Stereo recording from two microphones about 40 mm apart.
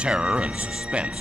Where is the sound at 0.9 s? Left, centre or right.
Right.